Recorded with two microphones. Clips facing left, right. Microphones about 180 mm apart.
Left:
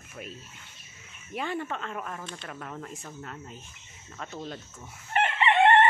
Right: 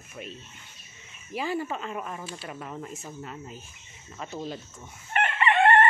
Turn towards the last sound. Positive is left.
turn(degrees=25)  # may be behind; listen again after turning